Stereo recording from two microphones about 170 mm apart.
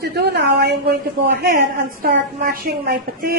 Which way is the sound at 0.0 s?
75° right (ahead or behind).